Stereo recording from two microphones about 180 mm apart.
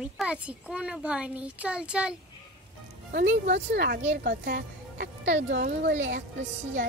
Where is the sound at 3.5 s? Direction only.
70° right (ahead or behind).